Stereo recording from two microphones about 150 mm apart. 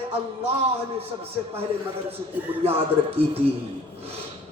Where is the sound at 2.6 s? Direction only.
40° right (ahead or behind).